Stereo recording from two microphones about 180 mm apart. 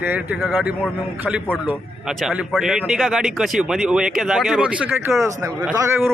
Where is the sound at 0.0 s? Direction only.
10° right (ahead or behind).